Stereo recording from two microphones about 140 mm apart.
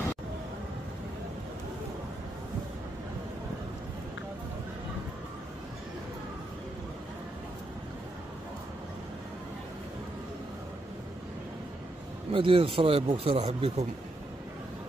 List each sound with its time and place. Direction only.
12.3 s speech: 40° right (ahead or behind)